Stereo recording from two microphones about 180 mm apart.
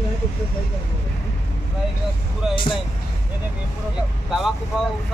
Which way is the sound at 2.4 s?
Centre (ahead or behind).